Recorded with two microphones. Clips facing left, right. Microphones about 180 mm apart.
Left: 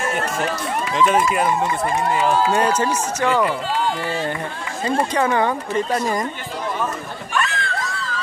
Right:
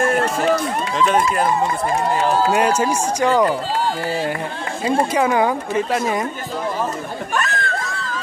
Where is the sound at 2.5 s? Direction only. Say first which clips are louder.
Right 1 dB; 10° right (ahead or behind).